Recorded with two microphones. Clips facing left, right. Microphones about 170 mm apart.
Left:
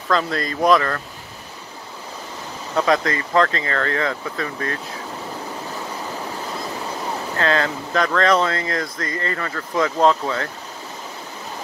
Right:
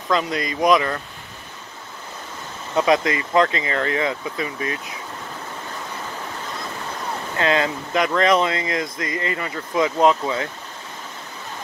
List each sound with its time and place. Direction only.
0.1 s speech: 15° right (ahead or behind)
2.8 s speech: 20° right (ahead or behind)
7.3 s speech: 20° right (ahead or behind)
9.9 s speech: 5° right (ahead or behind)